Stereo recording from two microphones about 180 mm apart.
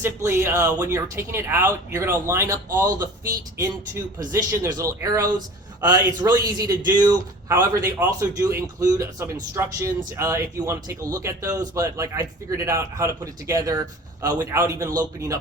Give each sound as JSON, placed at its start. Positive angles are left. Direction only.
{"t": 0.0, "sound": "a man's voice", "side_deg": -15}
{"t": 4.3, "sound": "a man's voice", "side_deg": -20}